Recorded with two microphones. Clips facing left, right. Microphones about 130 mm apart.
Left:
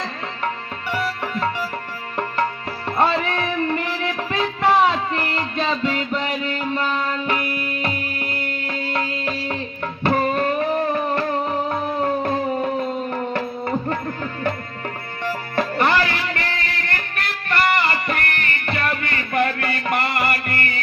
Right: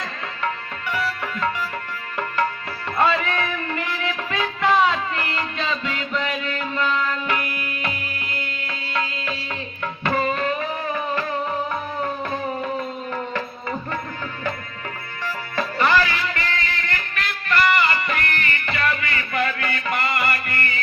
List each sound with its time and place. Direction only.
0.9 s music: 40° left (ahead or behind)
11.7 s a sound: 35° left (ahead or behind)
15.9 s a sound: 55° left (ahead or behind)
16.9 s music: 50° left (ahead or behind)
19.9 s music: 60° left (ahead or behind)
20.2 s music: 40° left (ahead or behind)